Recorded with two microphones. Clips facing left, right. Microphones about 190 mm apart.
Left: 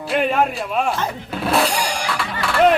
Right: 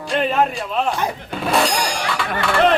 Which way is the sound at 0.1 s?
10° left (ahead or behind).